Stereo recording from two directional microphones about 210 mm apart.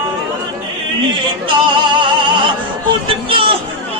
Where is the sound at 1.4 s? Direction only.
20° right (ahead or behind).